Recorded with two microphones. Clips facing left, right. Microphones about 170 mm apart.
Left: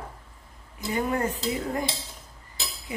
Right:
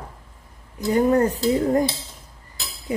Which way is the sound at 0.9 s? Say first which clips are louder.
Right 9 dB; 40° right (ahead or behind).